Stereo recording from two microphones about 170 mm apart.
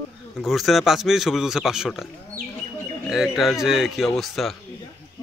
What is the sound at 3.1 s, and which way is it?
Speech, centre (ahead or behind).